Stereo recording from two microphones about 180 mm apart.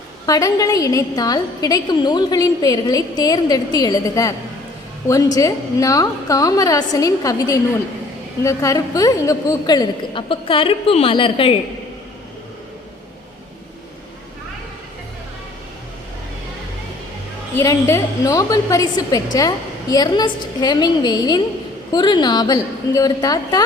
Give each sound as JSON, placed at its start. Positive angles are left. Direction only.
{"t": 0.3, "sound": "a woman's voice", "side_deg": 20}
{"t": 17.6, "sound": "a woman's voice", "side_deg": 15}